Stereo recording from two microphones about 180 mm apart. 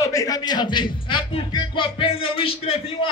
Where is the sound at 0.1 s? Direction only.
20° left (ahead or behind).